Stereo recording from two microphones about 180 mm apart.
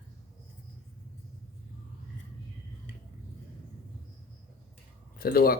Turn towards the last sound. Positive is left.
turn(degrees=55)  # may be behind; listen again after turning